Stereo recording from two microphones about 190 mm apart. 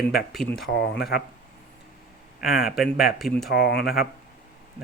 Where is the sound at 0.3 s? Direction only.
Centre (ahead or behind).